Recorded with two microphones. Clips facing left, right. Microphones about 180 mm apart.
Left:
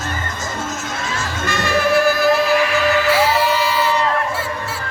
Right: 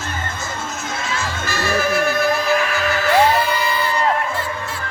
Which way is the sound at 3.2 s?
90° left.